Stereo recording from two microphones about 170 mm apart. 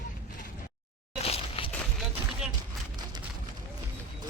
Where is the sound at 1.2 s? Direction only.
35° left (ahead or behind).